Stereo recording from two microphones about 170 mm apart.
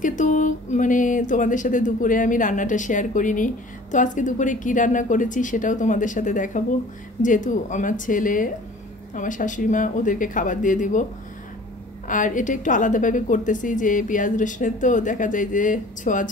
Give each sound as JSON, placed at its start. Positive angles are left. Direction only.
{"t": 0.0, "sound": "a woman's voice", "side_deg": 45}
{"t": 12.1, "sound": "a woman's voice", "side_deg": 50}